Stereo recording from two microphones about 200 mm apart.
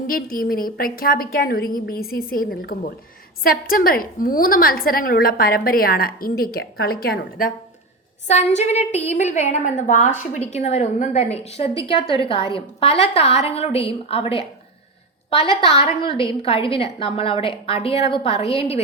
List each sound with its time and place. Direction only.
0.1 s a woman's voice: 45° left (ahead or behind)
8.3 s a woman's voice: 35° left (ahead or behind)